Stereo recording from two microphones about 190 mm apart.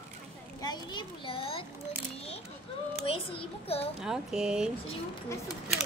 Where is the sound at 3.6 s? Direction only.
30° left (ahead or behind).